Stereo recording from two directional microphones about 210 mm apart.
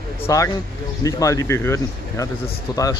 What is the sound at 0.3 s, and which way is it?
A man's voice, 15° left (ahead or behind).